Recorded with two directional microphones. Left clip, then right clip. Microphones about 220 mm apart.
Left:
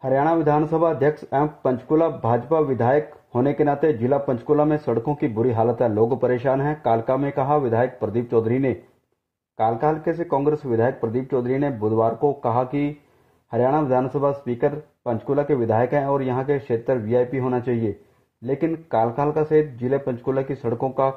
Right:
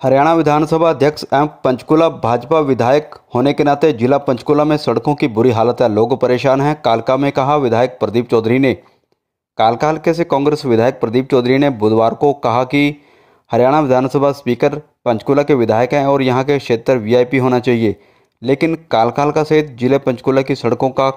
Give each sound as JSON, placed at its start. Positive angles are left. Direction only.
{"t": 0.0, "sound": "speech", "side_deg": -25}